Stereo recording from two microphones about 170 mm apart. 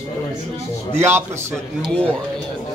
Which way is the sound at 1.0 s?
15° right (ahead or behind).